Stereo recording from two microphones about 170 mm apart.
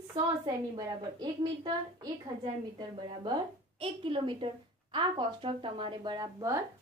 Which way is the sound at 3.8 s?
30° right (ahead or behind).